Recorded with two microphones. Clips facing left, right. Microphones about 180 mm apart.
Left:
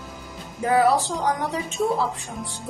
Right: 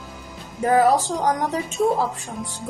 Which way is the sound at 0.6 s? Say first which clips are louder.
Right 2 dB; 40° right (ahead or behind).